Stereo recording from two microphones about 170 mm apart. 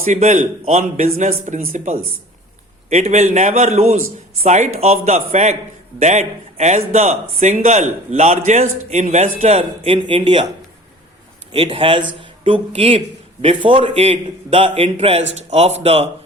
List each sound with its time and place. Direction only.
0.0 s a man's voice: 45° right (ahead or behind); by 10.4 s 30° right (ahead or behind)
11.5 s a man's voice: 35° right (ahead or behind)